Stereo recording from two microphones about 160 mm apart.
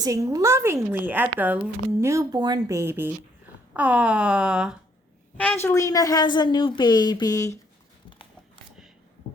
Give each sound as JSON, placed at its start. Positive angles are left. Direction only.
{"t": 0.0, "sound": "speech", "side_deg": -20}
{"t": 2.0, "sound": "speech", "side_deg": -20}
{"t": 5.4, "sound": "a woman's voice", "side_deg": 10}